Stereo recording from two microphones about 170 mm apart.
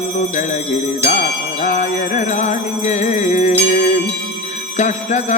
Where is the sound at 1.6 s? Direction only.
45° left (ahead or behind).